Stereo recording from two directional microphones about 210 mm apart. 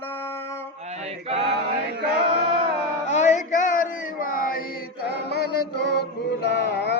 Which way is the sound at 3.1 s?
35° left (ahead or behind).